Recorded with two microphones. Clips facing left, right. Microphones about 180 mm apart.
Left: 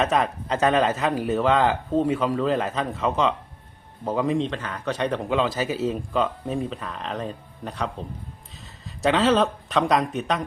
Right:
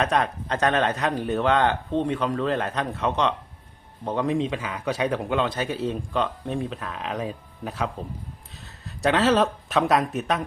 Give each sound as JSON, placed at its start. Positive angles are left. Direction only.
{"t": 0.0, "sound": "a man's voice", "side_deg": 0}
{"t": 9.0, "sound": "a man's voice", "side_deg": 0}